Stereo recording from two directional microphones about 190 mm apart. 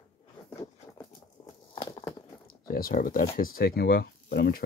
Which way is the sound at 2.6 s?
50° left (ahead or behind).